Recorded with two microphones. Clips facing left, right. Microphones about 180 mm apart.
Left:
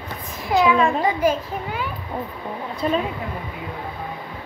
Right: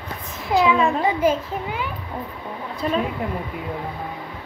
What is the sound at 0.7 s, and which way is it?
Speech, 5° right (ahead or behind).